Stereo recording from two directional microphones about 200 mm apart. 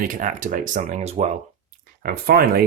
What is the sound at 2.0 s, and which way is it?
Speech, 50° right (ahead or behind).